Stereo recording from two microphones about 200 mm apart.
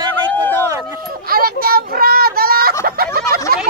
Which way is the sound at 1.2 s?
50° right (ahead or behind).